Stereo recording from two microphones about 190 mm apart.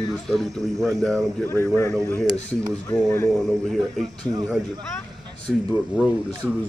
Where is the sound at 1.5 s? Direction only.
15° left (ahead or behind).